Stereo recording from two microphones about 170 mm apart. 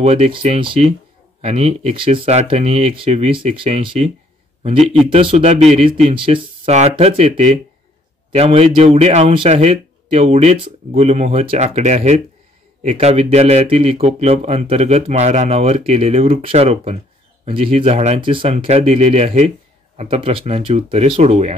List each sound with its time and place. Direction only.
0.0 s speech: 35° right (ahead or behind)